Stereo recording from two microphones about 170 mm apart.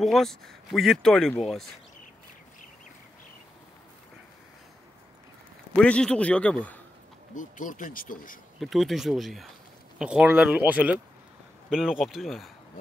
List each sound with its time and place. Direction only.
0.0 s speech: centre (ahead or behind)
5.8 s a man's voice: 5° left (ahead or behind)
7.3 s speech: 50° left (ahead or behind)
8.5 s speech: centre (ahead or behind)